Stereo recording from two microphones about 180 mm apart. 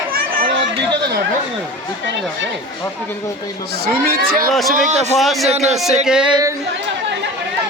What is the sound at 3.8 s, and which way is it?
A man's voice, 55° right (ahead or behind).